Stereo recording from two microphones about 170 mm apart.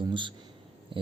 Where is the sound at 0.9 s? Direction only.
30° right (ahead or behind).